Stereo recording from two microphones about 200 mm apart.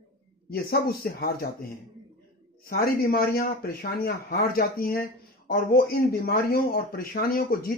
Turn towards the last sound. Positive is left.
turn(degrees=50)  # may be behind; listen again after turning